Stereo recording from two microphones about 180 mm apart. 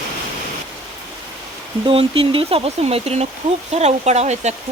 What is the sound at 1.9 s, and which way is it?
Speech, 30° right (ahead or behind).